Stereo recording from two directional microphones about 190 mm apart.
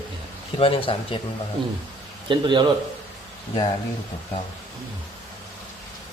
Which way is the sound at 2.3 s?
25° right (ahead or behind).